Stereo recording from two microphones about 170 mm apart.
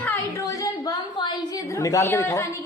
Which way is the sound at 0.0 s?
15° left (ahead or behind).